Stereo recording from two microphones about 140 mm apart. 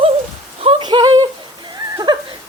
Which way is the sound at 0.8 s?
35° right (ahead or behind).